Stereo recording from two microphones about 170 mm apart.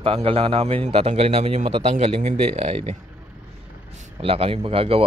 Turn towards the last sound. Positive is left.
turn(degrees=-35)  # may be behind; listen again after turning